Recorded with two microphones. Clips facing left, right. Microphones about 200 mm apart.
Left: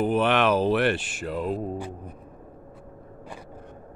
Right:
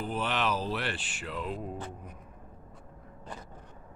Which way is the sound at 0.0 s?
65° left (ahead or behind).